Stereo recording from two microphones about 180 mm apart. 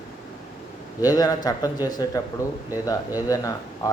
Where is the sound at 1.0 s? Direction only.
20° left (ahead or behind).